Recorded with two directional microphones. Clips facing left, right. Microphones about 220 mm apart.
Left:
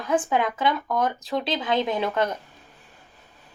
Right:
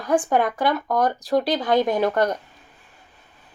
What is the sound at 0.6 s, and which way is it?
Speech, 45° right (ahead or behind).